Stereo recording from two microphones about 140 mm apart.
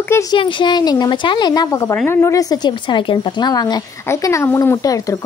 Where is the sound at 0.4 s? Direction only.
35° left (ahead or behind).